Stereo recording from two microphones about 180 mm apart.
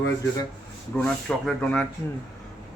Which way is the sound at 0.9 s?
5° left (ahead or behind).